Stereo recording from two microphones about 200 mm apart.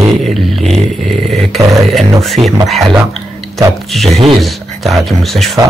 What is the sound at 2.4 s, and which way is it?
Speech, 30° right (ahead or behind).